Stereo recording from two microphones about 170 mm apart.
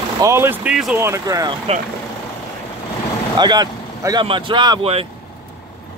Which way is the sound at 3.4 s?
25° right (ahead or behind).